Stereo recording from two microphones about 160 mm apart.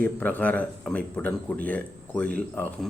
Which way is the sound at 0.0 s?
10° left (ahead or behind).